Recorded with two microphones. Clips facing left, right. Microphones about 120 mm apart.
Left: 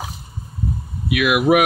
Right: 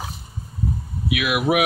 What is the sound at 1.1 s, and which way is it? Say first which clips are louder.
Speech: left 5 dB; 50° left (ahead or behind).